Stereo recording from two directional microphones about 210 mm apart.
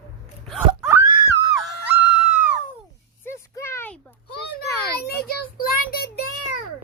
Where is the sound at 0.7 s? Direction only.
15° right (ahead or behind).